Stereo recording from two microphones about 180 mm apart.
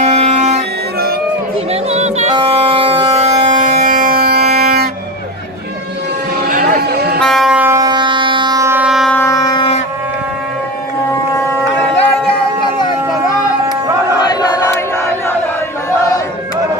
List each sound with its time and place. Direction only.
0.0 s music: 35° right (ahead or behind)
1.7 s music: 35° right (ahead or behind); by 4.8 s 60° right (ahead or behind)
6.4 s vehicle: 50° right (ahead or behind)
7.2 s a sound: centre (ahead or behind)
9.1 s ship: 15° left (ahead or behind)
12.3 s music: 25° left (ahead or behind)
14.3 s battle cry: 20° left (ahead or behind)